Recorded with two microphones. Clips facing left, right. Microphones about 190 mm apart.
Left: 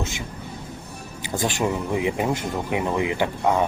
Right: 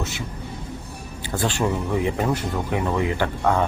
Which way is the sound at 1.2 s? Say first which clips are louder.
Even; 10° left (ahead or behind).